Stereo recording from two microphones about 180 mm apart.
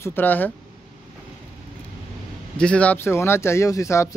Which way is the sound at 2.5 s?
5° left (ahead or behind).